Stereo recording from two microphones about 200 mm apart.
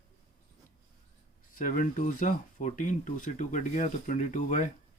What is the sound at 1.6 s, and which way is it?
Speech, 40° left (ahead or behind).